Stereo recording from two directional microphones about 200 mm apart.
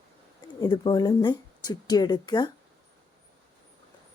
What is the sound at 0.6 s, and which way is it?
A woman's voice, 20° left (ahead or behind).